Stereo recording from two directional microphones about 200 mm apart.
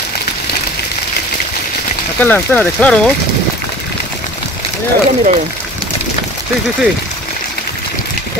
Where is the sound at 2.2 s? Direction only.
10° left (ahead or behind).